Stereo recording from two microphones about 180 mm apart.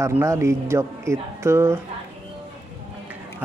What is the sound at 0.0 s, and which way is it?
Speech, 15° right (ahead or behind).